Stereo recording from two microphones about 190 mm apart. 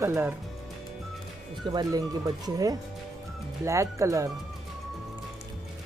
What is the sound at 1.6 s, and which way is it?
Speech, 20° right (ahead or behind).